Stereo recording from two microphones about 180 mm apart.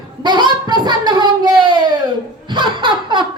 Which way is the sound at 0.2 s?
25° right (ahead or behind).